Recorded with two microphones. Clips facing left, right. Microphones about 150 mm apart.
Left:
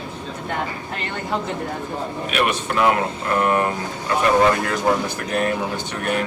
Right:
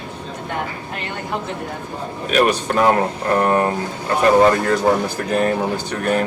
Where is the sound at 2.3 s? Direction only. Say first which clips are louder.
Right 6 dB; 35° right (ahead or behind).